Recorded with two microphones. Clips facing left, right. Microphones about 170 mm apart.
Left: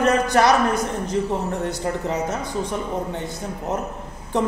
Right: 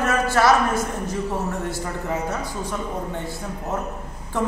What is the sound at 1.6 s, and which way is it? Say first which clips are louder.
A man's voice: left 3 dB; 20° left (ahead or behind).